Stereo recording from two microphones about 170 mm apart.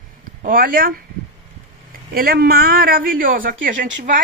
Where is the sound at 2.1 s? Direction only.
60° right (ahead or behind).